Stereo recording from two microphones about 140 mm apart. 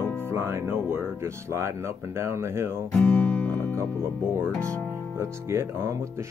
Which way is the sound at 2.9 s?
10° left (ahead or behind).